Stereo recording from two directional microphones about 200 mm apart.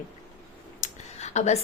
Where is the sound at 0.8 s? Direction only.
35° left (ahead or behind).